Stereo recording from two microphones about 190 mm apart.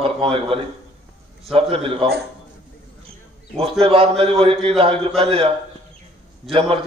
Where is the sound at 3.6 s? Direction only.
30° right (ahead or behind).